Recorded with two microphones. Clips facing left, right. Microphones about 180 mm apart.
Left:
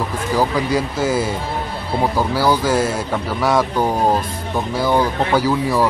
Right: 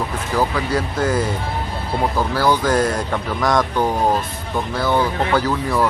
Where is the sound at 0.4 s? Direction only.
10° left (ahead or behind).